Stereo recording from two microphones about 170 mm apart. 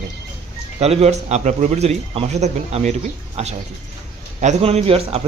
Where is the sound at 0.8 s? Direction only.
40° right (ahead or behind).